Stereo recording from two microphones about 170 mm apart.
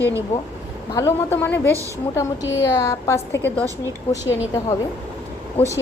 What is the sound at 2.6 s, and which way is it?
Speech, 20° left (ahead or behind).